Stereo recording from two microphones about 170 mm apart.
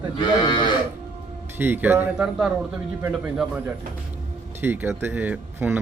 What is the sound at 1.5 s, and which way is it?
Speech, 10° right (ahead or behind).